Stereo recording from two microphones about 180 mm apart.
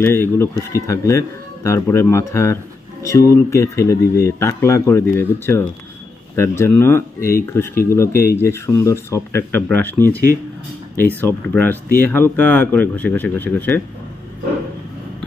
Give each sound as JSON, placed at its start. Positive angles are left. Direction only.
{"t": 0.0, "sound": "speech", "side_deg": 10}
{"t": 11.1, "sound": "speech", "side_deg": 10}